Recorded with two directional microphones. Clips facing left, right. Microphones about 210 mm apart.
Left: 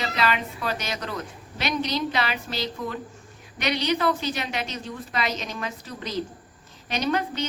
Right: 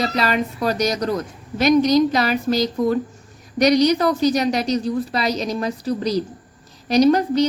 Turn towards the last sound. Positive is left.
turn(degrees=-40)  # may be behind; listen again after turning